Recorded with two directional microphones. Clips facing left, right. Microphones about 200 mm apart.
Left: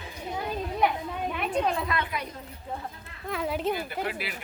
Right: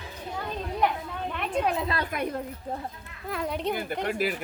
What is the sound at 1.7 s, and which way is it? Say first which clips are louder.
Speech: right 1 dB; 30° right (ahead or behind).